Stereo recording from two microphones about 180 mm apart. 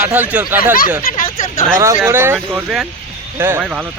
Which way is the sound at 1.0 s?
50° left (ahead or behind).